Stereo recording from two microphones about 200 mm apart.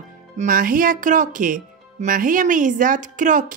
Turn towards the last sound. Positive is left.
turn(degrees=-40)  # may be behind; listen again after turning